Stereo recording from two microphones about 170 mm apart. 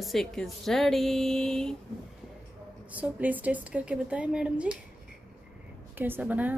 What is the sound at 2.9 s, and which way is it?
Speech, 10° right (ahead or behind).